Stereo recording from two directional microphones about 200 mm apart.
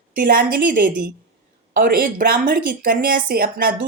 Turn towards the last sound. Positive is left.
turn(degrees=-45)  # may be behind; listen again after turning